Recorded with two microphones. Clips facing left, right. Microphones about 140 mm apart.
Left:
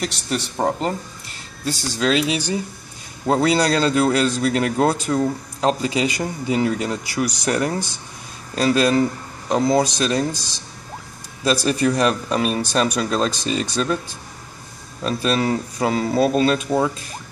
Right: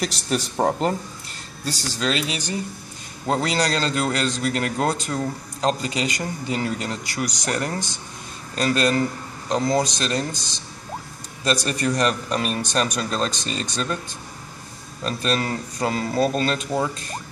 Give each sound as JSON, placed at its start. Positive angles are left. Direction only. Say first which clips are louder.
{"t": 0.0, "sound": "speech", "louder": "even", "side_deg": 0}
{"t": 11.5, "sound": "speech", "louder": "left 4 dB", "side_deg": 10}
{"t": 15.0, "sound": "speech", "louder": "left 4 dB", "side_deg": 10}